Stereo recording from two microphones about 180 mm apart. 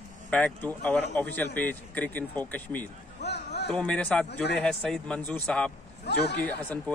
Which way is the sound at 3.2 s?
65° left (ahead or behind).